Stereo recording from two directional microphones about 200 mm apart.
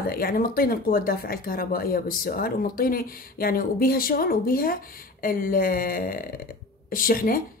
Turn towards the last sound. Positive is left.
turn(degrees=45)  # may be behind; listen again after turning